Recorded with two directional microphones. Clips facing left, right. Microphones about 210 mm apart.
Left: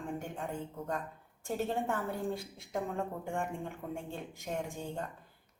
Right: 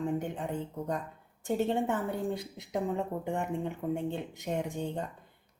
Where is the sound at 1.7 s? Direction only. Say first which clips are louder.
Right 4 dB; 20° right (ahead or behind).